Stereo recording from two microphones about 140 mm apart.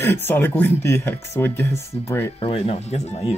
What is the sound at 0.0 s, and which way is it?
Speech, 15° left (ahead or behind).